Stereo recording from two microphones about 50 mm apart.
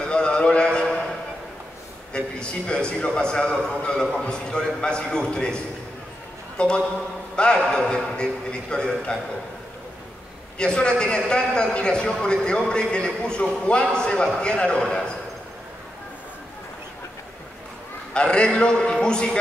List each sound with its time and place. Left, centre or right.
0.0 s a sound: centre
2.1 s a man's voice: centre
10.6 s a man's voice: centre
18.1 s a man's voice: centre